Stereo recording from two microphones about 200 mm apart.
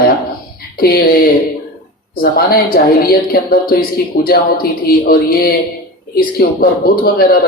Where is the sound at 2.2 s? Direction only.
50° left (ahead or behind).